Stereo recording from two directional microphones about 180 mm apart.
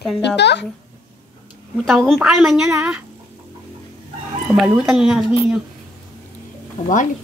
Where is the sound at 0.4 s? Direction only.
70° left (ahead or behind).